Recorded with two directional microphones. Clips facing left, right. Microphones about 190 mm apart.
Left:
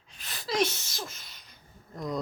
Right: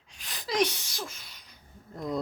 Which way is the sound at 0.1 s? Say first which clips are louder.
Even; 15° right (ahead or behind).